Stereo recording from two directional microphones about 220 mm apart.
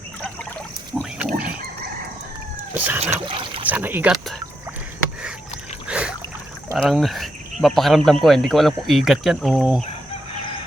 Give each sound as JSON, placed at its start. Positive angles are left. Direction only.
{"t": 1.2, "sound": "a sound", "side_deg": -5}
{"t": 2.7, "sound": "cat", "side_deg": -10}
{"t": 3.0, "sound": "trickle", "side_deg": -25}
{"t": 3.7, "sound": "speech", "side_deg": -10}
{"t": 5.9, "sound": "a sound", "side_deg": -5}
{"t": 6.7, "sound": "speech", "side_deg": 0}